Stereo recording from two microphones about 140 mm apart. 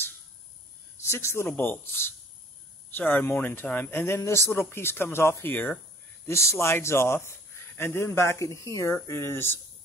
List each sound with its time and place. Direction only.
1.0 s a man's voice: 20° left (ahead or behind)